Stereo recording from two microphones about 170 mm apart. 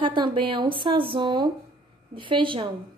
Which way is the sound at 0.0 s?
30° right (ahead or behind).